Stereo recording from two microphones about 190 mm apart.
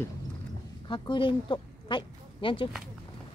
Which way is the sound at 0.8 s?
25° left (ahead or behind).